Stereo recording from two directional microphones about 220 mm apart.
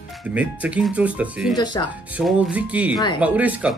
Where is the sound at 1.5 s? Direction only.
20° left (ahead or behind).